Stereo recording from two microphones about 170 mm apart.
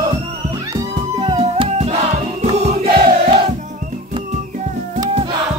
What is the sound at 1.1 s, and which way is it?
Music, 35° right (ahead or behind).